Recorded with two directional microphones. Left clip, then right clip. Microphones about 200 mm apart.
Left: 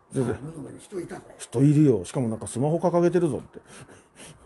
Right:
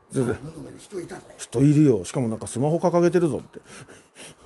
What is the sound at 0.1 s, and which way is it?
Speech, 20° right (ahead or behind).